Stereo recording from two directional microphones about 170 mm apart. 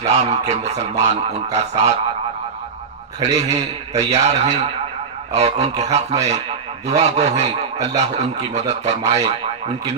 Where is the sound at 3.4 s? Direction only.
40° right (ahead or behind).